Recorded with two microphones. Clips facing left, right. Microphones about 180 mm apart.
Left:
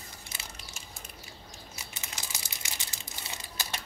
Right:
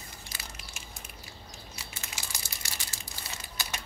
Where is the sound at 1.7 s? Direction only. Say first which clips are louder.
Even; 20° left (ahead or behind).